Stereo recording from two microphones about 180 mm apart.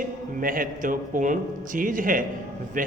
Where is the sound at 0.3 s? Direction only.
50° right (ahead or behind).